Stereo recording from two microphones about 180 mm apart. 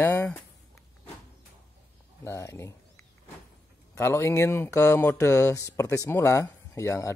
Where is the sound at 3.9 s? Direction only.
15° left (ahead or behind).